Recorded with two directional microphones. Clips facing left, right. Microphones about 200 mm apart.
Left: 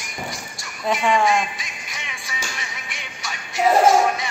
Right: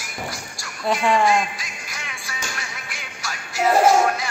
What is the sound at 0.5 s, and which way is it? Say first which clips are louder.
Music: even; centre (ahead or behind).